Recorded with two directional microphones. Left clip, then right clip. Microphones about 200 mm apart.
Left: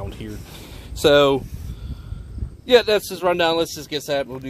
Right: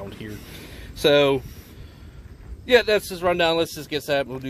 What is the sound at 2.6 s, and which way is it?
Speech, 10° left (ahead or behind).